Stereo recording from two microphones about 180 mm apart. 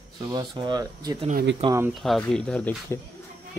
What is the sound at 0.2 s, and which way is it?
Speech, 25° right (ahead or behind).